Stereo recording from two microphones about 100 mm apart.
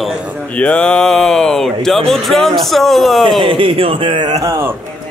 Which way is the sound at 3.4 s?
60° right (ahead or behind).